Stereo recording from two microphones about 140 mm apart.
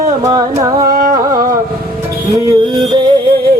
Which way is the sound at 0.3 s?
25° right (ahead or behind).